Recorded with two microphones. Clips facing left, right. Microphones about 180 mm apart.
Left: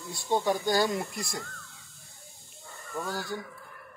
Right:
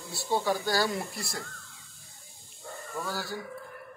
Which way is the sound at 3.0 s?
20° left (ahead or behind).